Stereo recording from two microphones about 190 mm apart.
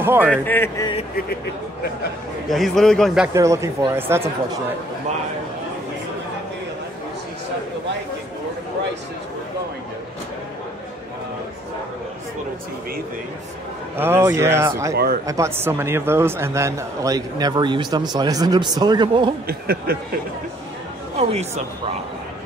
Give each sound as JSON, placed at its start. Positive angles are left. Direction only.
{"t": 0.0, "sound": "a man's voice", "side_deg": -10}
{"t": 0.3, "sound": "a man's voice", "side_deg": 10}
{"t": 1.1, "sound": "speech", "side_deg": 55}
{"t": 2.5, "sound": "a man's voice", "side_deg": 0}
{"t": 3.3, "sound": "speech", "side_deg": -15}
{"t": 13.9, "sound": "a man's voice", "side_deg": -10}
{"t": 19.4, "sound": "speech", "side_deg": -55}
{"t": 21.2, "sound": "speech", "side_deg": -35}